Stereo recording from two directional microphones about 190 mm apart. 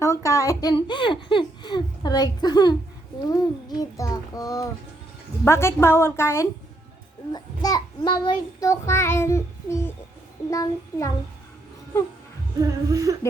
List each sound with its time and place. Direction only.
0.0 s a child's voice: 15° left (ahead or behind)
3.2 s a sound: 20° left (ahead or behind)
3.9 s child singing: 20° left (ahead or behind)
12.5 s humming: 15° right (ahead or behind)